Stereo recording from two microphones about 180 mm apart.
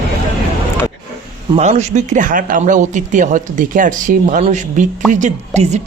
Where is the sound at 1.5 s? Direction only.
40° right (ahead or behind).